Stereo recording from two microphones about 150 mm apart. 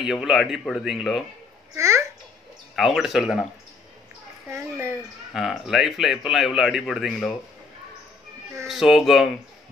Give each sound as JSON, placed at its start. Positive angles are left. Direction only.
{"t": 0.0, "sound": "a man's voice", "side_deg": 0}
{"t": 1.8, "sound": "a child's voice", "side_deg": -20}
{"t": 2.7, "sound": "a man's voice", "side_deg": 0}
{"t": 4.5, "sound": "speech", "side_deg": -15}
{"t": 5.3, "sound": "a man's voice", "side_deg": 0}
{"t": 8.6, "sound": "a man's voice", "side_deg": 0}